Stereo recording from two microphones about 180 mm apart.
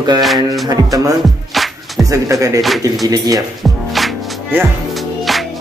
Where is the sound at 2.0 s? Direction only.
20° right (ahead or behind).